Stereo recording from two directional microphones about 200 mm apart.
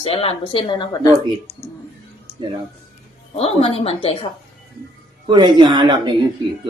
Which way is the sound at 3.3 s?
30° left (ahead or behind).